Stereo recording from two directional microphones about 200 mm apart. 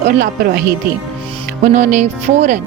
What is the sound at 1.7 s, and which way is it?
Speech, 35° right (ahead or behind).